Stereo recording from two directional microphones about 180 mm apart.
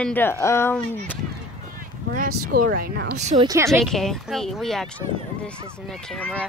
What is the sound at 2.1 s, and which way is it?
Speech, 55° right (ahead or behind).